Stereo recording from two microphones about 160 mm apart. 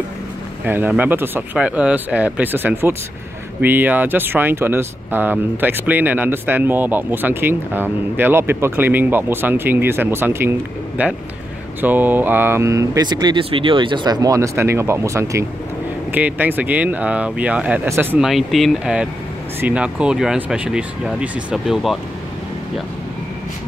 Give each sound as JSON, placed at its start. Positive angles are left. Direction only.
{"t": 0.7, "sound": "speech", "side_deg": -10}
{"t": 18.2, "sound": "speech", "side_deg": 0}